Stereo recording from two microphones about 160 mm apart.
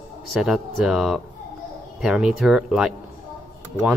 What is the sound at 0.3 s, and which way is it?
Speech, centre (ahead or behind).